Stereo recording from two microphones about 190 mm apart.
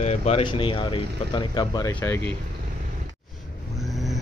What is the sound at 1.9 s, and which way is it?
Speech, 10° left (ahead or behind).